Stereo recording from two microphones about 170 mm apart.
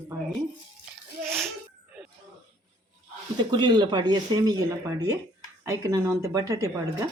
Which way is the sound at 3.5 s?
25° right (ahead or behind).